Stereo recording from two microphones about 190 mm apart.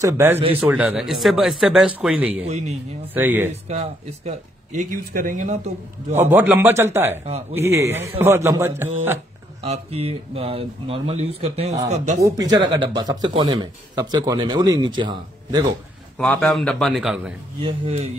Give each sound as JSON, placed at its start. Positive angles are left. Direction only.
{"t": 0.0, "sound": "a man's voice", "side_deg": -15}
{"t": 2.4, "sound": "speech", "side_deg": -35}
{"t": 3.2, "sound": "a man's voice", "side_deg": -10}
{"t": 3.6, "sound": "speech", "side_deg": -35}
{"t": 6.1, "sound": "a man's voice", "side_deg": -10}
{"t": 9.7, "sound": "speech", "side_deg": -30}
{"t": 12.2, "sound": "speech", "side_deg": -15}
{"t": 16.2, "sound": "speech", "side_deg": 0}
{"t": 17.6, "sound": "speech", "side_deg": -30}